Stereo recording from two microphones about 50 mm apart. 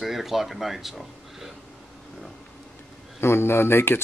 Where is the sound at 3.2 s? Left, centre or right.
Left.